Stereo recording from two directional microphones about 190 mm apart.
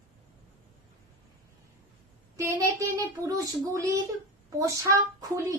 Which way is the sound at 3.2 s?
15° right (ahead or behind).